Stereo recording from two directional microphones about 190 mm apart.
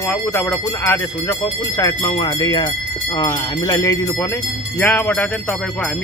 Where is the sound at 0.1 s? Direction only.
10° left (ahead or behind).